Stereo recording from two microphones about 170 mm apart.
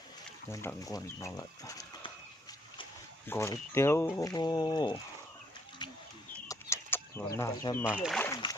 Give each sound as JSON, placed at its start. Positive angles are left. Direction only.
{"t": 0.5, "sound": "speech", "side_deg": 15}
{"t": 3.2, "sound": "speech", "side_deg": 15}
{"t": 5.8, "sound": "a sound", "side_deg": 25}
{"t": 6.5, "sound": "chicken", "side_deg": 15}
{"t": 7.3, "sound": "speech", "side_deg": 15}
{"t": 7.9, "sound": "speech", "side_deg": -5}